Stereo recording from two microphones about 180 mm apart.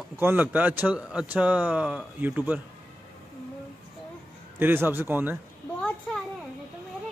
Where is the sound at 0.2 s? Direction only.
10° right (ahead or behind).